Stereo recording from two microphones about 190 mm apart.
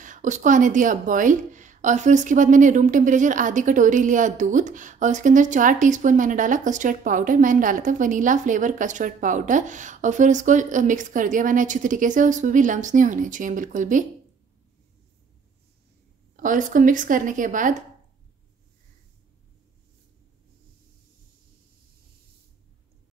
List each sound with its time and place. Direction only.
0.0 s speech: 40° right (ahead or behind)
16.3 s speech: 45° right (ahead or behind)